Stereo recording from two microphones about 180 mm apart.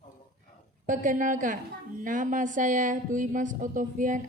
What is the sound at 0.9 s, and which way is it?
A woman's voice, 45° right (ahead or behind).